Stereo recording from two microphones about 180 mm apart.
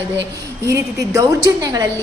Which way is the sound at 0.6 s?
15° right (ahead or behind).